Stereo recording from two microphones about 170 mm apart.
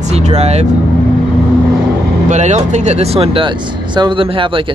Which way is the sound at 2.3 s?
45° right (ahead or behind).